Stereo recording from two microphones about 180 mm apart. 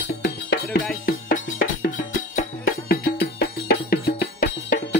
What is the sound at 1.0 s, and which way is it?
Music, 50° left (ahead or behind).